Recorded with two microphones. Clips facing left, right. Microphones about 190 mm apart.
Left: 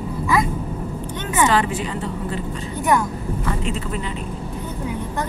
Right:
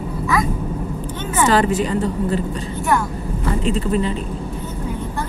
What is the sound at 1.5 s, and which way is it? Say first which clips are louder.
Speech: right 4 dB; 40° right (ahead or behind).